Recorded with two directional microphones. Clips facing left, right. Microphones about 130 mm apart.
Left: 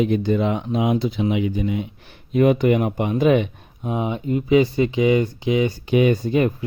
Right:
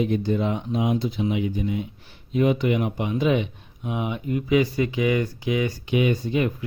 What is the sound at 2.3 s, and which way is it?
Speech, 55° left (ahead or behind).